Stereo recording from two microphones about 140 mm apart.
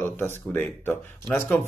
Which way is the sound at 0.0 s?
15° left (ahead or behind).